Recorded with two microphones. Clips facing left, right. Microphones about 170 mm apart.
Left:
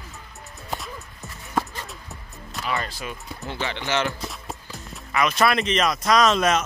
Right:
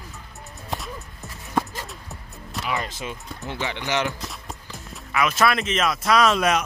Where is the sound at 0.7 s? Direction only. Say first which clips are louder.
Right 1 dB; centre (ahead or behind).